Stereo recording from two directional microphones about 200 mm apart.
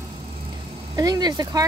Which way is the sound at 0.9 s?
20° right (ahead or behind).